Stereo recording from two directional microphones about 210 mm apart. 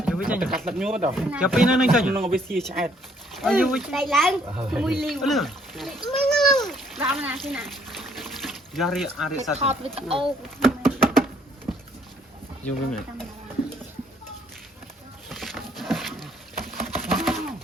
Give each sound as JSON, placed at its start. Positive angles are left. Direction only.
{"t": 0.0, "sound": "speech", "side_deg": -5}
{"t": 6.2, "sound": "splash", "side_deg": 0}
{"t": 7.0, "sound": "speech", "side_deg": -10}
{"t": 7.3, "sound": "water", "side_deg": 0}
{"t": 9.4, "sound": "speech", "side_deg": -30}
{"t": 10.2, "sound": "a sound", "side_deg": 0}
{"t": 12.6, "sound": "speech", "side_deg": 5}
{"t": 15.3, "sound": "a sound", "side_deg": 0}